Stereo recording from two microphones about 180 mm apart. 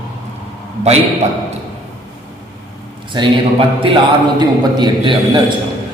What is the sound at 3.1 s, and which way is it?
A man's voice, 30° right (ahead or behind).